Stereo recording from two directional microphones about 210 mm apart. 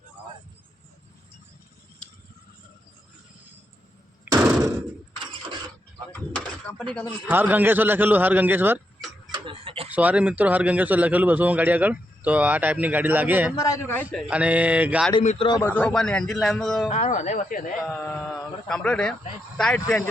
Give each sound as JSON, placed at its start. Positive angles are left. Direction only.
{"t": 2.0, "sound": "a sound", "side_deg": 5}
{"t": 4.3, "sound": "knock", "side_deg": -15}
{"t": 6.1, "sound": "door", "side_deg": 10}
{"t": 7.0, "sound": "a man's voice", "side_deg": -10}
{"t": 9.3, "sound": "tick-tock", "side_deg": -25}
{"t": 9.9, "sound": "a man's voice", "side_deg": -5}
{"t": 13.6, "sound": "speech", "side_deg": 15}
{"t": 15.2, "sound": "speech", "side_deg": 35}
{"t": 15.4, "sound": "speech", "side_deg": 20}
{"t": 15.7, "sound": "speech", "side_deg": 5}
{"t": 16.9, "sound": "speech", "side_deg": 35}
{"t": 18.0, "sound": "speech", "side_deg": 5}